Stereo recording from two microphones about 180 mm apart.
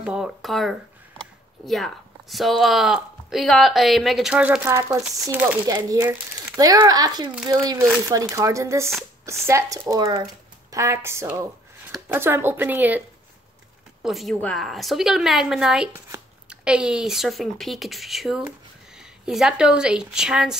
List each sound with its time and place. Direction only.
0.0 s speech: 5° right (ahead or behind)
14.0 s speech: centre (ahead or behind)